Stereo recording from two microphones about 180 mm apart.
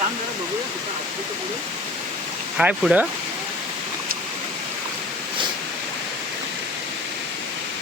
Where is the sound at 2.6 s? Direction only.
5° right (ahead or behind).